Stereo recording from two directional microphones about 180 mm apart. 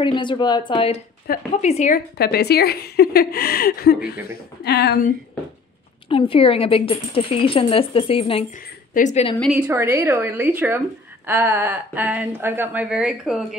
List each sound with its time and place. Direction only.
0.0 s speech: 25° left (ahead or behind)
1.3 s a woman's voice: 55° left (ahead or behind)
1.6 s speech: 35° left (ahead or behind)
2.1 s a woman's voice: 60° left (ahead or behind)
6.0 s speech: 30° left (ahead or behind)
9.4 s a woman's voice: 5° right (ahead or behind)